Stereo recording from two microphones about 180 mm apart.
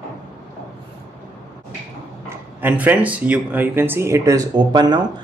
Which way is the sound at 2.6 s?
10° right (ahead or behind).